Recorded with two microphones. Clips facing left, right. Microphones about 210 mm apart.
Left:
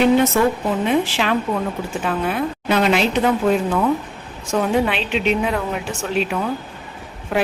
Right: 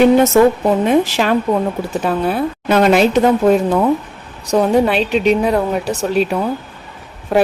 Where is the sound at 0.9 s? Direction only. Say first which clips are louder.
Right 2 dB; 40° right (ahead or behind).